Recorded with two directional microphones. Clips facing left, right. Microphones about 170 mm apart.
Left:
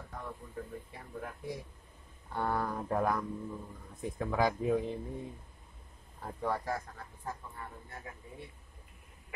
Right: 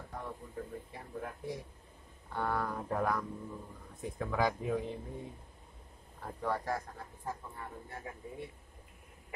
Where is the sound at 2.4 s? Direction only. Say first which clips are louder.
Left 1 dB; 35° left (ahead or behind).